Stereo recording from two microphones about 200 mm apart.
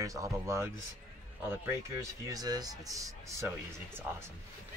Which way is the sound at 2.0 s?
15° right (ahead or behind).